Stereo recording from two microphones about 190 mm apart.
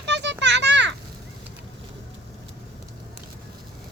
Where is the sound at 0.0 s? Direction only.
65° right (ahead or behind).